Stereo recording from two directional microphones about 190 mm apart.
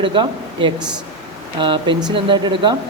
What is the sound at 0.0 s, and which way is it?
Speech, 25° right (ahead or behind).